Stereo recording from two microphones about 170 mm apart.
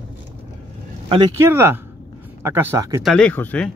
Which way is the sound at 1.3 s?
15° right (ahead or behind).